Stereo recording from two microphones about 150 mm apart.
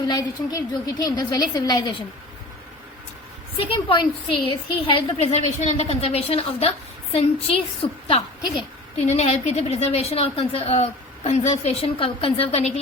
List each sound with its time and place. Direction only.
0.1 s a woman's voice: 25° left (ahead or behind)
3.6 s a woman's voice: 40° left (ahead or behind)